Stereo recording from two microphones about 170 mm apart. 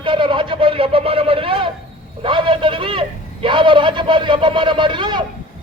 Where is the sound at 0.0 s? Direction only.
30° right (ahead or behind).